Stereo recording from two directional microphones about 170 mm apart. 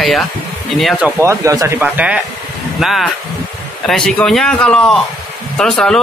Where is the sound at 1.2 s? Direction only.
15° right (ahead or behind).